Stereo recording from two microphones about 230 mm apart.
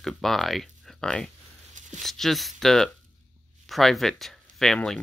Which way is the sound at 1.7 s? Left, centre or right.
Right.